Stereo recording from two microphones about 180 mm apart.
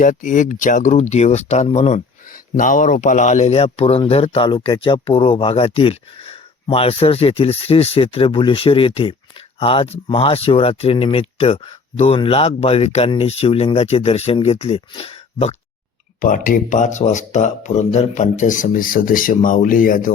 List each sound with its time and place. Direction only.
0.0 s speech: 45° left (ahead or behind)
16.2 s speech: 50° left (ahead or behind)